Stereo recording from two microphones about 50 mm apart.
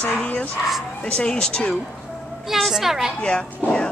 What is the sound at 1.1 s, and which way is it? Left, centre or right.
Speech, centre.